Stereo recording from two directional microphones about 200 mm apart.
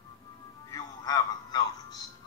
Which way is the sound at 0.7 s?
15° left (ahead or behind).